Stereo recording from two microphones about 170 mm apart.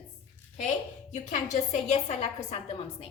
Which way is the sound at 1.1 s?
45° left (ahead or behind).